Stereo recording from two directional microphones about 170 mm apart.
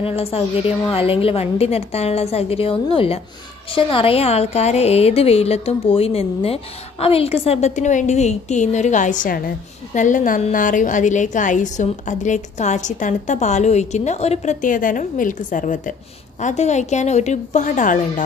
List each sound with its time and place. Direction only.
0.0 s a woman's voice: 35° left (ahead or behind)